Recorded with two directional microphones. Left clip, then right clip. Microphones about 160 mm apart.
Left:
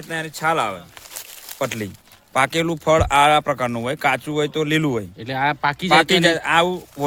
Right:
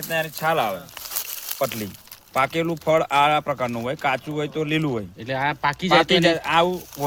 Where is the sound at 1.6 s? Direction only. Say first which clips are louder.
Left 1 dB; 75° left (ahead or behind).